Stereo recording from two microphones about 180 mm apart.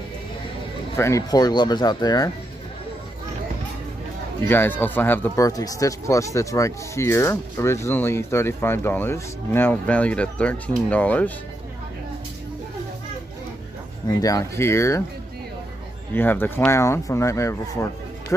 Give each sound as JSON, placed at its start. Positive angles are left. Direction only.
{"t": 0.9, "sound": "speech", "side_deg": 15}
{"t": 4.5, "sound": "speech", "side_deg": 10}
{"t": 14.0, "sound": "speech", "side_deg": 20}
{"t": 16.2, "sound": "speech", "side_deg": 10}